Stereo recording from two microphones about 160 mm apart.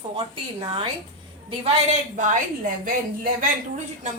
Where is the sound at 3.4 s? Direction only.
50° right (ahead or behind).